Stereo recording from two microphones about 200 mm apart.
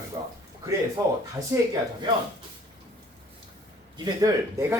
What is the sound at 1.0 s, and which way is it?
Speech, 15° right (ahead or behind).